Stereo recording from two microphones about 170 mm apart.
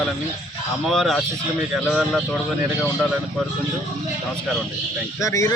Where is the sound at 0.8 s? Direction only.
Centre (ahead or behind).